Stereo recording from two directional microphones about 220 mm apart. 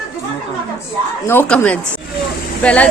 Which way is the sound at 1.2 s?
5° left (ahead or behind).